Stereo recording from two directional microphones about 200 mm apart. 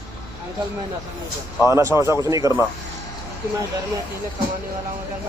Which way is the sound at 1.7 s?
15° right (ahead or behind).